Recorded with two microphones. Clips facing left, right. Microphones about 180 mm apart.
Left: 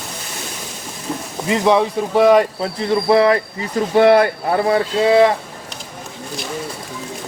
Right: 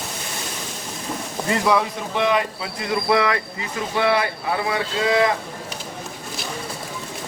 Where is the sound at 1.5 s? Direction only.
25° left (ahead or behind).